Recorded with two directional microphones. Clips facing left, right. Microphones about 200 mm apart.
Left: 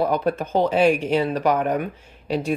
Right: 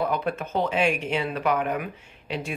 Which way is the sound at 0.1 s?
35° left (ahead or behind).